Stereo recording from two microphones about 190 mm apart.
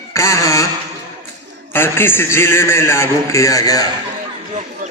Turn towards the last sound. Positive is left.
turn(degrees=15)  # may be behind; listen again after turning